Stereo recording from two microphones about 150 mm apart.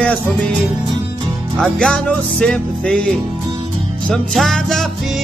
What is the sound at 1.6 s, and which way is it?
Speech, 5° left (ahead or behind).